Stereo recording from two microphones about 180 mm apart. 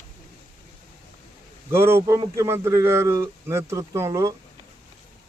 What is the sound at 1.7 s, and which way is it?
A man's voice, 15° right (ahead or behind).